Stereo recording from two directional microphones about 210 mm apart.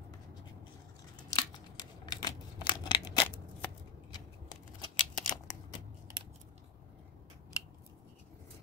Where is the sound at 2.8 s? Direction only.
20° left (ahead or behind).